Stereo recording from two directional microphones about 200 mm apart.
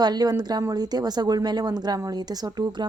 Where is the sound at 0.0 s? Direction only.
20° right (ahead or behind).